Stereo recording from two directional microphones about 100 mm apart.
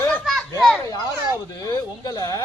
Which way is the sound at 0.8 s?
35° left (ahead or behind).